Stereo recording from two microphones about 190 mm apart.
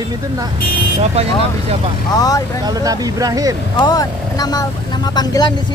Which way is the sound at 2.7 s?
20° right (ahead or behind).